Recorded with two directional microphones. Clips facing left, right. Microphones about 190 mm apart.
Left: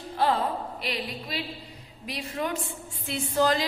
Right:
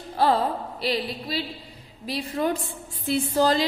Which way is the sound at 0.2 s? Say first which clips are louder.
Right 3 dB; 35° right (ahead or behind).